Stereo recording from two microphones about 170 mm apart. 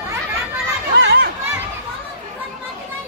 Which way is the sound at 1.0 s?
80° right.